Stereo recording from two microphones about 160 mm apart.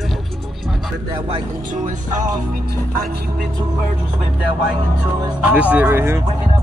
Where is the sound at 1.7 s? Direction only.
55° right (ahead or behind).